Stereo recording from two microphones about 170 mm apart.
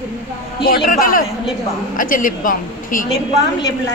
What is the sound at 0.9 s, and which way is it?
A woman's voice, 55° left (ahead or behind).